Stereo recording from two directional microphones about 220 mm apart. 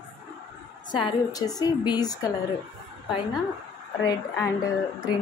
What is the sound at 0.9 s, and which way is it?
A woman's voice, 20° left (ahead or behind).